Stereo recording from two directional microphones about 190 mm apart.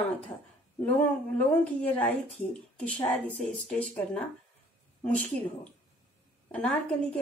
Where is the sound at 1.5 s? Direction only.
10° left (ahead or behind).